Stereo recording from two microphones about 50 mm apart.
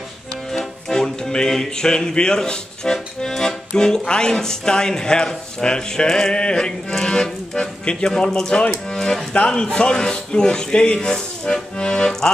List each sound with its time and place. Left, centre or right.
0.5 s music: centre
9.5 s speech: centre